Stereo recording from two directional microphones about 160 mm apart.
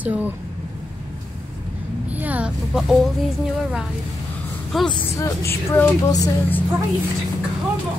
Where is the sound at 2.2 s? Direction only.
10° right (ahead or behind).